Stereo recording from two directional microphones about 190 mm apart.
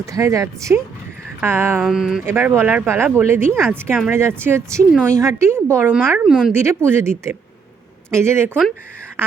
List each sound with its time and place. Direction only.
0.0 s speech: 15° right (ahead or behind)
1.8 s speech: centre (ahead or behind)